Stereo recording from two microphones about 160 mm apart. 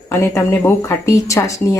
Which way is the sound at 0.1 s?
15° left (ahead or behind).